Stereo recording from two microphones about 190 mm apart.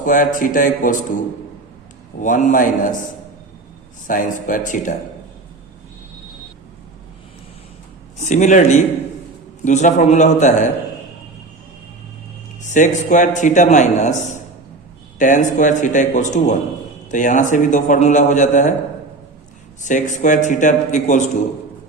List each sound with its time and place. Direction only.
0.0 s speech: 45° left (ahead or behind)
2.2 s speech: 45° left (ahead or behind)
4.0 s speech: 45° left (ahead or behind)
8.2 s a man's voice: 40° left (ahead or behind)
12.7 s a man's voice: 40° left (ahead or behind)
19.8 s a man's voice: 40° left (ahead or behind)